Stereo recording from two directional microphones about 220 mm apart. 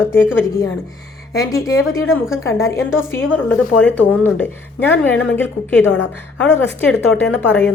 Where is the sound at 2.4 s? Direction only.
15° left (ahead or behind).